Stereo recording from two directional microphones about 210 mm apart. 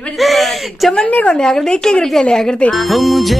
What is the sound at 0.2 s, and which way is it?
A woman's voice, centre (ahead or behind).